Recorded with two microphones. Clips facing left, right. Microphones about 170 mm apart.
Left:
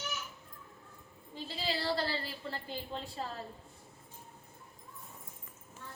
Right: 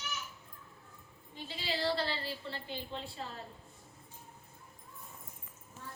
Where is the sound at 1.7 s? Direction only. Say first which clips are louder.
Right 1 dB; 40° left (ahead or behind).